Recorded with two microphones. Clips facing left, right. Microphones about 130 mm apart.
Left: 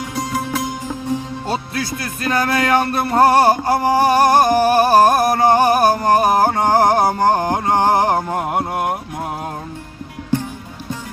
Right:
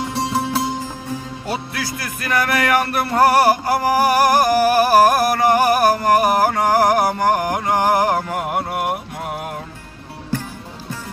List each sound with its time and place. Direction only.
0.1 s music: 30° right (ahead or behind)
1.5 s music: 25° left (ahead or behind)